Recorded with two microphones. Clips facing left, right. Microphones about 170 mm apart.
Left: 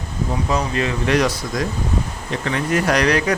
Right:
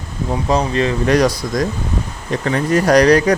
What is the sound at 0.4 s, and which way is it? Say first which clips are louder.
Speech: right 6 dB; 35° right (ahead or behind).